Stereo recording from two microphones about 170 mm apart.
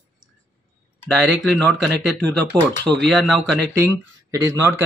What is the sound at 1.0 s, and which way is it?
Speech, 5° left (ahead or behind).